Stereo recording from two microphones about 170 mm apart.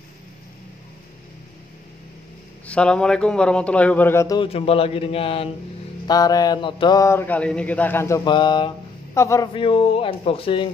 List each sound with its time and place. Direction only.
2.6 s speech: 5° left (ahead or behind)
4.4 s speech: 35° left (ahead or behind)
6.0 s speech: 20° left (ahead or behind)
8.3 s a sound: 30° left (ahead or behind)
9.1 s speech: 15° left (ahead or behind)
9.5 s speech: 30° left (ahead or behind)